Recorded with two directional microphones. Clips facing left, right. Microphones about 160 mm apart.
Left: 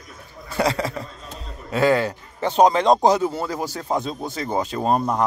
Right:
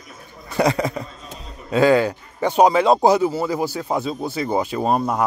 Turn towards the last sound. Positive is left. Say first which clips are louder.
# right 1 dB
turn(degrees=-5)  # may be behind; listen again after turning